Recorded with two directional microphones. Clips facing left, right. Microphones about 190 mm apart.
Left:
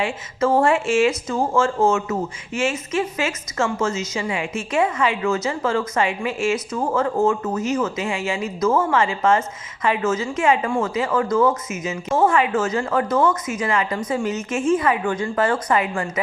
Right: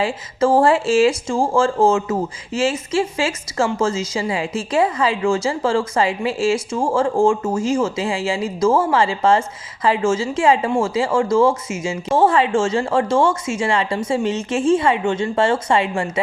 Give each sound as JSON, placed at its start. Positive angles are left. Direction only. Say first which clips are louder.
{"t": 0.0, "sound": "speech", "louder": "right 3 dB", "side_deg": -30}